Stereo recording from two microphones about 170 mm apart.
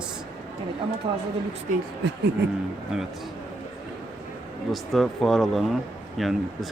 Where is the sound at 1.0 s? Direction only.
30° right (ahead or behind).